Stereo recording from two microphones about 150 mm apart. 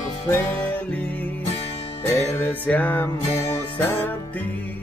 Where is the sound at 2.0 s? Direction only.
15° left (ahead or behind).